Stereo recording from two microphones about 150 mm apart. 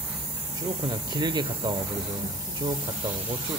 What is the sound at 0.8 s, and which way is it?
Speech, 30° right (ahead or behind).